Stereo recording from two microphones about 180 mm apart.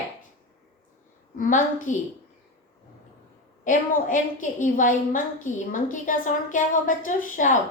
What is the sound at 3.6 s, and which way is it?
A woman's voice, 45° left (ahead or behind).